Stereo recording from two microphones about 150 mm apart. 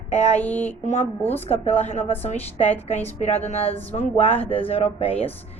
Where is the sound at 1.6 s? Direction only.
45° left (ahead or behind).